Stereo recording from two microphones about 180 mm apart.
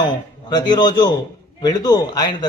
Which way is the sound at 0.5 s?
25° left (ahead or behind).